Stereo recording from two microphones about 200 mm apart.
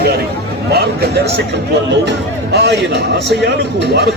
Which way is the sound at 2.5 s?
60° right (ahead or behind).